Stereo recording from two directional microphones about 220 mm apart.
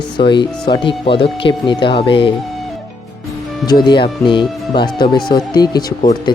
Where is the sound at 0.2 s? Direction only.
20° left (ahead or behind).